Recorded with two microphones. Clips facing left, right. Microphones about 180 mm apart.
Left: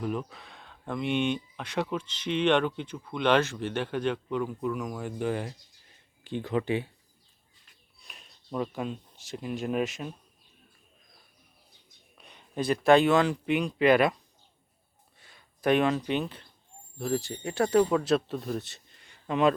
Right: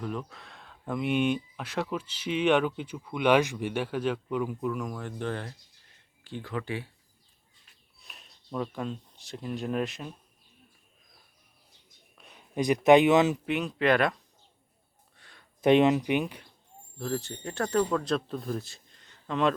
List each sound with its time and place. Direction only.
0.0 s speech: 5° left (ahead or behind); by 6.9 s 20° left (ahead or behind)
7.9 s speech: centre (ahead or behind)
12.1 s a sound: 5° right (ahead or behind)
12.5 s speech: 15° right (ahead or behind)
13.4 s speech: centre (ahead or behind)
15.6 s speech: 20° right (ahead or behind)
17.0 s speech: 10° left (ahead or behind)